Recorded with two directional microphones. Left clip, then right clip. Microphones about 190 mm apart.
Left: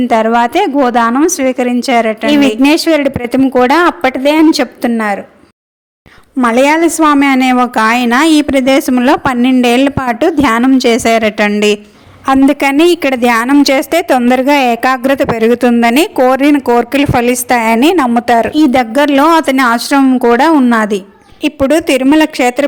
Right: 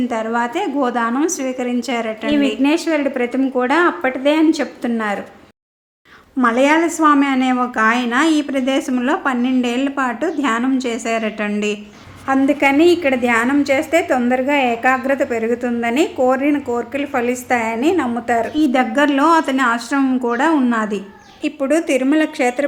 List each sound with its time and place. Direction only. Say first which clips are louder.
0.0 s a woman's voice: left 10 dB; 45° left (ahead or behind)
6.4 s a woman's voice: left 6 dB; 40° left (ahead or behind)